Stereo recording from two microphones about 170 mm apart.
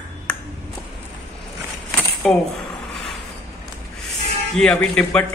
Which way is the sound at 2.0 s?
5° left (ahead or behind).